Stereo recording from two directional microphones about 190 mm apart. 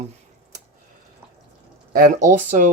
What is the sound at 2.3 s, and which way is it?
Speech, 40° right (ahead or behind).